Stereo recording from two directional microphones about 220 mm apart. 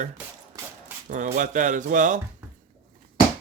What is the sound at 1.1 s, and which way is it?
Speech, 35° right (ahead or behind).